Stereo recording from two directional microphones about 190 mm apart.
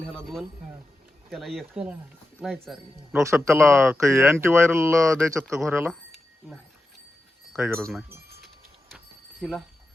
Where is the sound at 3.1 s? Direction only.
15° right (ahead or behind).